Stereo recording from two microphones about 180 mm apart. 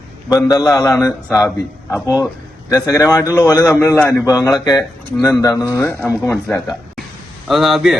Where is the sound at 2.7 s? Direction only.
20° left (ahead or behind).